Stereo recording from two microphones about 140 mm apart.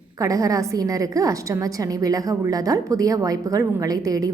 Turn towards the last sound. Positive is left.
turn(degrees=-25)  # may be behind; listen again after turning